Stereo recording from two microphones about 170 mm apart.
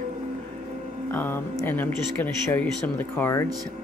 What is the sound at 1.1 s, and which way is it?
Speech, 10° left (ahead or behind).